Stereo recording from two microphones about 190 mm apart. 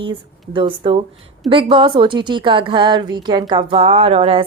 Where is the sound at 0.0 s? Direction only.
25° right (ahead or behind).